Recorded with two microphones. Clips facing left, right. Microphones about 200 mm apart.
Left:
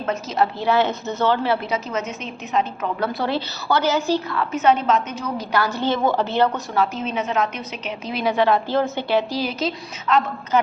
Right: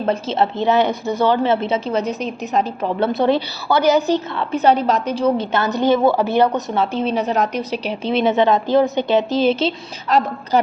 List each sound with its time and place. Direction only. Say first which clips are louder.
0.0 s a woman's voice: right 3 dB; 30° right (ahead or behind)
3.0 s a woman's voice: right 8 dB; 20° right (ahead or behind)